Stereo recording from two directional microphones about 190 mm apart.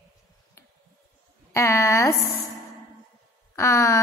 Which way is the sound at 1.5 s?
15° left (ahead or behind).